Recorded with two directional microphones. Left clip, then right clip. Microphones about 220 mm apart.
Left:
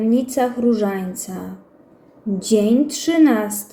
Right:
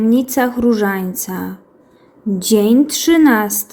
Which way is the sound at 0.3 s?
45° right (ahead or behind).